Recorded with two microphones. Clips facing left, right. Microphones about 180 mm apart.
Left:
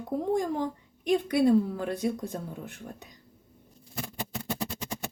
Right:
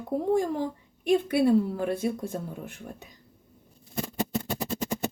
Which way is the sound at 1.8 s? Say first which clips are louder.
Right 2 dB; 55° right (ahead or behind).